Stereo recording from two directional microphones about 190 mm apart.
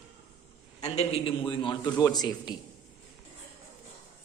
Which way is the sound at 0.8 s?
35° left (ahead or behind).